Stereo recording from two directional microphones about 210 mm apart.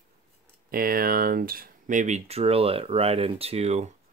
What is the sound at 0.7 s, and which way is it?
Speech, 45° right (ahead or behind).